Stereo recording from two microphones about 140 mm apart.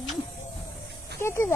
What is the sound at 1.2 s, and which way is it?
Speech, 20° left (ahead or behind).